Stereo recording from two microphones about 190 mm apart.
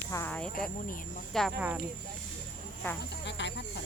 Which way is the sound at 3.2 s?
70° left (ahead or behind).